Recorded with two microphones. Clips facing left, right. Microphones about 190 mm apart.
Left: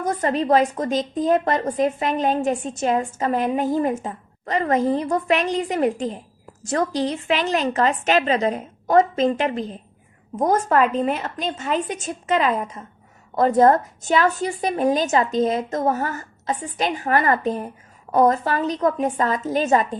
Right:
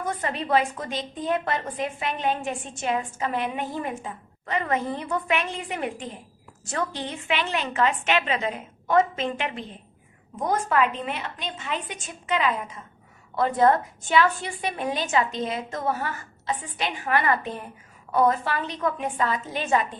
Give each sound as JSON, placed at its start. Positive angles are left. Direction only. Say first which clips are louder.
{"t": 0.0, "sound": "a woman's voice", "louder": "left 7 dB", "side_deg": 40}